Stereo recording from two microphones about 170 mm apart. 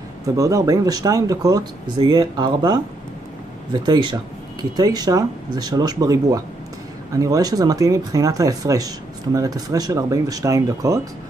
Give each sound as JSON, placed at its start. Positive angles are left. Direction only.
{"t": 0.4, "sound": "speech", "side_deg": -20}